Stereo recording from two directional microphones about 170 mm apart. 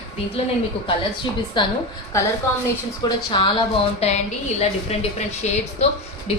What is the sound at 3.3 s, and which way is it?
A woman's voice, 25° left (ahead or behind).